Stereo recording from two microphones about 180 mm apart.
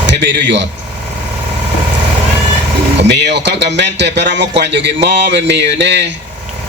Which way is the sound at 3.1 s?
70° right (ahead or behind).